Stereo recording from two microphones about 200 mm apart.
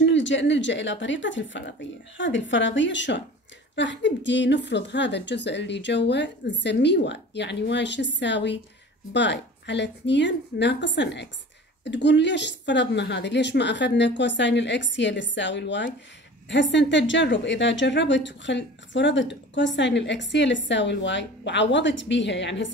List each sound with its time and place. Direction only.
0.0 s speech: 65° left (ahead or behind)